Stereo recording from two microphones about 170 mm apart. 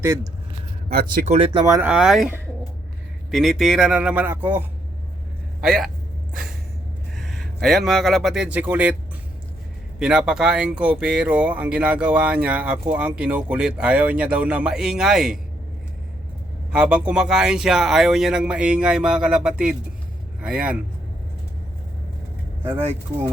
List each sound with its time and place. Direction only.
0.9 s speech: 60° right (ahead or behind)
1.3 s speech: 35° right (ahead or behind)
1.6 s speech: 15° right (ahead or behind)
1.9 s speech: 5° right (ahead or behind)
3.3 s speech: centre (ahead or behind)
5.6 s speech: 5° right (ahead or behind)
7.2 s a man's voice: centre (ahead or behind)
10.0 s speech: 5° right (ahead or behind)
16.7 s speech: 5° right (ahead or behind)